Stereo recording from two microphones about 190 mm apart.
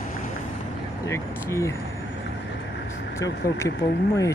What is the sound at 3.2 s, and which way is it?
Speech, 15° left (ahead or behind).